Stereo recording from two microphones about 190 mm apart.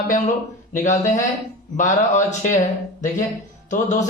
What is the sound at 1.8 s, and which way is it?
Speech, 40° left (ahead or behind).